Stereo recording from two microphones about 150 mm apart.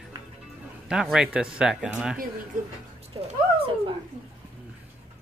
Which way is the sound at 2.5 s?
60° right (ahead or behind).